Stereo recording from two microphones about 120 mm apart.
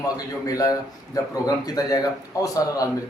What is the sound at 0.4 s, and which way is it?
A man's voice, 30° left (ahead or behind).